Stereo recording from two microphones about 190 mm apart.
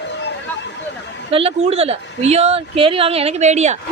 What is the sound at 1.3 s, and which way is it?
Speech, 30° right (ahead or behind).